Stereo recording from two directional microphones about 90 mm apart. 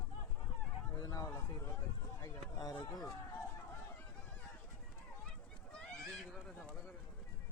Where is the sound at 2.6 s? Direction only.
45° left (ahead or behind).